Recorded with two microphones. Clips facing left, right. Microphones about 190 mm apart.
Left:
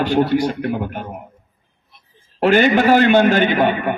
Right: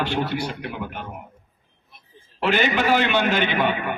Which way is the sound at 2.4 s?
45° left (ahead or behind).